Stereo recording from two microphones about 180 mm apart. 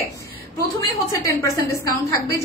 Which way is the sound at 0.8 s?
15° left (ahead or behind).